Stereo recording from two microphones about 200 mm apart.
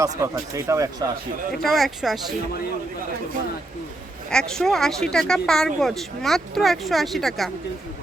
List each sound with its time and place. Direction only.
0.0 s speech: 15° right (ahead or behind)
1.6 s speech: centre (ahead or behind)
4.3 s speech: 5° left (ahead or behind)